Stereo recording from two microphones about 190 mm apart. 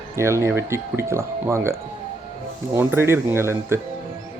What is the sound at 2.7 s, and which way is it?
Speech, 15° right (ahead or behind).